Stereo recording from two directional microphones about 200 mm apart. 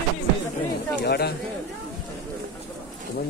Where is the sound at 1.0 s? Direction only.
55° left (ahead or behind).